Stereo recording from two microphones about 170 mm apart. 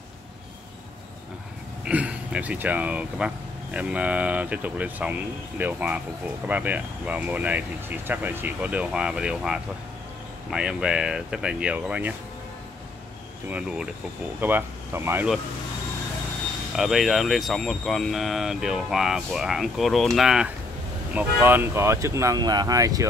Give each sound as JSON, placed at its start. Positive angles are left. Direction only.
{"t": 1.9, "sound": "speech", "side_deg": -10}
{"t": 13.5, "sound": "speech", "side_deg": -5}
{"t": 16.7, "sound": "speech", "side_deg": 0}